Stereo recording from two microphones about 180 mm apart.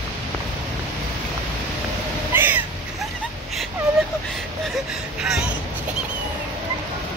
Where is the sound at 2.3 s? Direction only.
10° right (ahead or behind).